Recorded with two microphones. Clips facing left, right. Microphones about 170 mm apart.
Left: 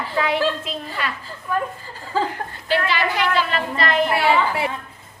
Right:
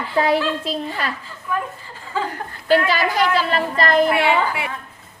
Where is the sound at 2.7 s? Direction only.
40° right (ahead or behind).